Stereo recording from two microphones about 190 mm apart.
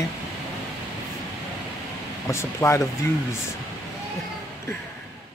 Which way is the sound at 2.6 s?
10° left (ahead or behind).